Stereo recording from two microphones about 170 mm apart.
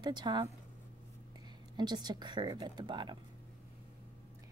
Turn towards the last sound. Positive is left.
turn(degrees=-25)  # may be behind; listen again after turning